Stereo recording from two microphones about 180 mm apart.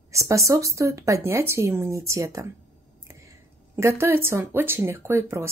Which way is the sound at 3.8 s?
15° right (ahead or behind).